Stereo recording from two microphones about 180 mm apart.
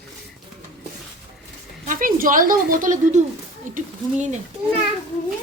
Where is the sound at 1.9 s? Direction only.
50° right (ahead or behind).